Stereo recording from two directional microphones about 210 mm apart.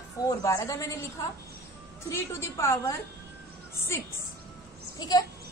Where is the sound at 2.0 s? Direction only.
15° left (ahead or behind).